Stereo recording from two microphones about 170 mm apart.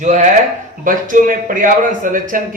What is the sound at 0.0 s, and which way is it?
A man's voice, 45° right (ahead or behind).